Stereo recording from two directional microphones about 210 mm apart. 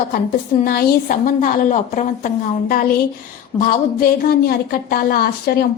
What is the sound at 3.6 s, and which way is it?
A woman's voice, 45° left (ahead or behind).